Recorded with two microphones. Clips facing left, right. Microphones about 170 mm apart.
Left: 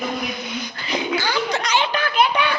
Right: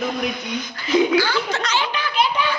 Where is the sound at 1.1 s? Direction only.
15° left (ahead or behind).